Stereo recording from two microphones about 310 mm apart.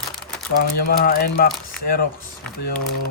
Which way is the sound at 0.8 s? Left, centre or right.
Left.